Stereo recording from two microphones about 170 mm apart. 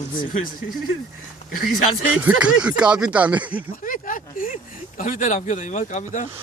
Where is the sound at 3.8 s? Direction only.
50° left (ahead or behind).